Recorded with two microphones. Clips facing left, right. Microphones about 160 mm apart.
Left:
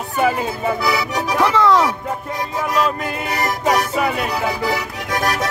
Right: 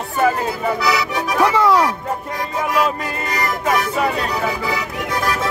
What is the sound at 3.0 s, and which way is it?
Music, 5° left (ahead or behind).